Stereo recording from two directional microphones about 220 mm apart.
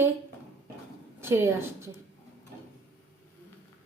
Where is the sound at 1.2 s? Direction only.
10° right (ahead or behind).